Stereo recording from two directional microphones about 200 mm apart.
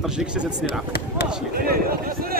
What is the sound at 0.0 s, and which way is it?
Speech, 5° right (ahead or behind).